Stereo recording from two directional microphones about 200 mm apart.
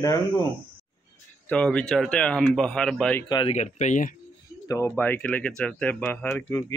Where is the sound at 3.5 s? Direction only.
35° left (ahead or behind).